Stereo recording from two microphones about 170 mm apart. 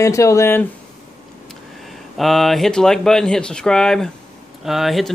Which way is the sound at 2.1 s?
Centre (ahead or behind).